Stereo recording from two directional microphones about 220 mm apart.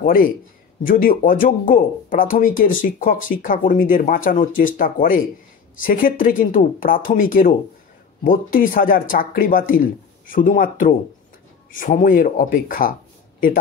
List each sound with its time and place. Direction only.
0.0 s a man's voice: 40° left (ahead or behind)